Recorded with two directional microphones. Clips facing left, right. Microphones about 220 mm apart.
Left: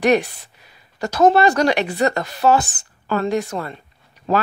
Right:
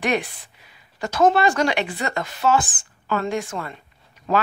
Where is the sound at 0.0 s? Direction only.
40° left (ahead or behind).